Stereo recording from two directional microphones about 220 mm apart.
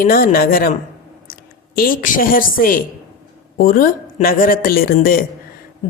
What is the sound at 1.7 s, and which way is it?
A man's voice, 40° left (ahead or behind).